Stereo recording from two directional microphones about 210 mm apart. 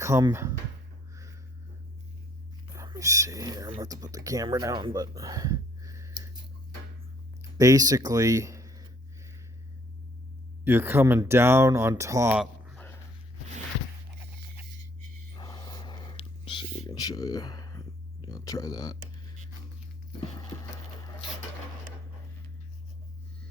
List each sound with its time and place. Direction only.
0.0 s speech: 15° right (ahead or behind)
2.7 s speech: 15° right (ahead or behind)
7.6 s speech: 15° right (ahead or behind)
10.6 s speech: 10° right (ahead or behind)
15.4 s a sound: 20° left (ahead or behind)
18.3 s speech: 15° left (ahead or behind)